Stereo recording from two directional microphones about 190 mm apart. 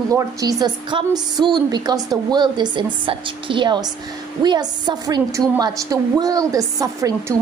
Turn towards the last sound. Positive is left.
turn(degrees=-20)  # may be behind; listen again after turning